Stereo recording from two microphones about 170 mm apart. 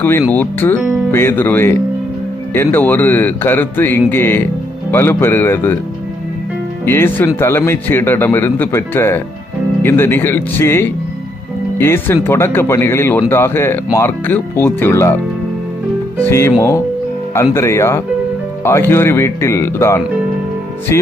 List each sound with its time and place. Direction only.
0.0 s speech: 10° left (ahead or behind)
6.8 s speech: 15° left (ahead or behind)
16.2 s speech: 15° left (ahead or behind)